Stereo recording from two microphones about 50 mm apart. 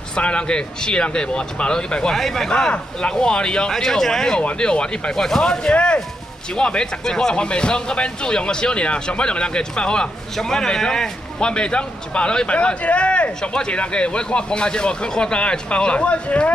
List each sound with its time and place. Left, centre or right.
0.1 s a man's voice: left
2.1 s speech: centre
2.5 s a man's voice: centre